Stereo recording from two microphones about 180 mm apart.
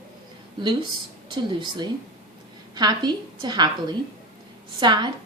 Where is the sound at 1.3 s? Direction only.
25° right (ahead or behind).